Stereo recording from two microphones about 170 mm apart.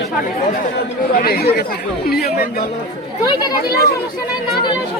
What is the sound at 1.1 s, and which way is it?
Speech, 65° left (ahead or behind).